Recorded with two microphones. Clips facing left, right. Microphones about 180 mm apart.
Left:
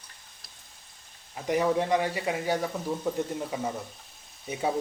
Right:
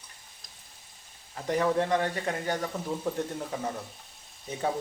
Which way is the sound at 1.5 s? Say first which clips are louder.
Left 1 dB; 10° left (ahead or behind).